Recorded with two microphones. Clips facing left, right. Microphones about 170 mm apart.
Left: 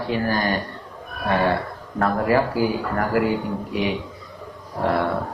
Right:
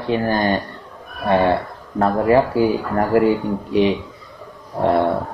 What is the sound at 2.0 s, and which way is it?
Speech, 30° right (ahead or behind).